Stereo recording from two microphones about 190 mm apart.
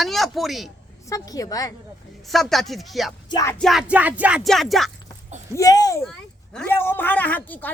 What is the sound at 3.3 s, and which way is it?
Speech, 20° left (ahead or behind).